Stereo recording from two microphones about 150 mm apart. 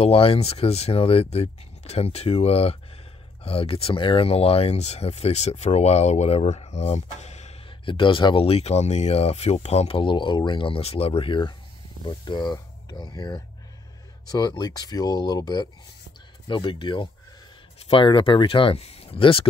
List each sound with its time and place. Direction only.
0.0 s speech: 40° left (ahead or behind)
7.8 s speech: 35° left (ahead or behind)